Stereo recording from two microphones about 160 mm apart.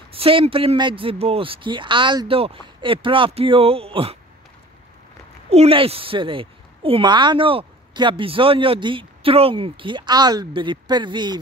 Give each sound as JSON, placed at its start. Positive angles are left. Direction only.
{"t": 0.1, "sound": "a woman's voice", "side_deg": -35}
{"t": 5.5, "sound": "a woman's voice", "side_deg": -40}